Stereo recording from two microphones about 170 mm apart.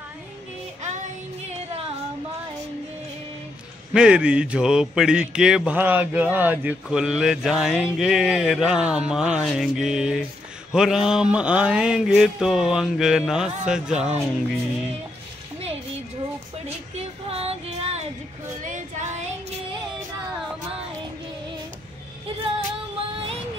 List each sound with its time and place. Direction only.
3.9 s speech: 5° right (ahead or behind)
16.6 s music: 40° right (ahead or behind)
18.6 s female singing: 50° right (ahead or behind)